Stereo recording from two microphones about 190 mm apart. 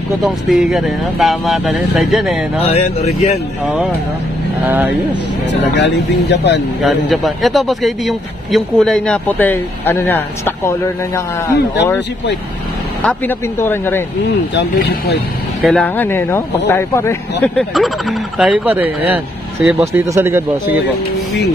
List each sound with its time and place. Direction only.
0.2 s speech: centre (ahead or behind)
2.7 s speech: 35° left (ahead or behind)
4.6 s speech: 10° right (ahead or behind)
5.5 s speech: 65° left (ahead or behind)
6.8 s speech: centre (ahead or behind)
13.0 s speech: 10° left (ahead or behind)
14.5 s speech: 60° left (ahead or behind)
15.6 s speech: 5° left (ahead or behind)
17.7 s speech: centre (ahead or behind)